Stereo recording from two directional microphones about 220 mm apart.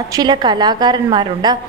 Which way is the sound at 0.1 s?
20° right (ahead or behind).